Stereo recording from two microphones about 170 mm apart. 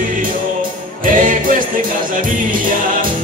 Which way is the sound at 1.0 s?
50° right (ahead or behind).